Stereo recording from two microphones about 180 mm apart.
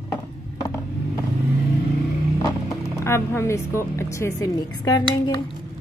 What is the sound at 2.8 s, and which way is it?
Speech, 15° left (ahead or behind).